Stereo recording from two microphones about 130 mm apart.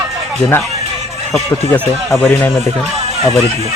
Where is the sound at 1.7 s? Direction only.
15° left (ahead or behind).